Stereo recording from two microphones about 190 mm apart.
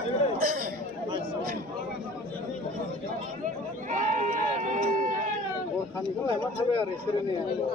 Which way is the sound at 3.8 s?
40° right (ahead or behind).